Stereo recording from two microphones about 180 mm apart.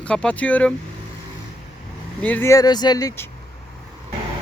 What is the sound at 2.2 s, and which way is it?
Speech, 10° left (ahead or behind).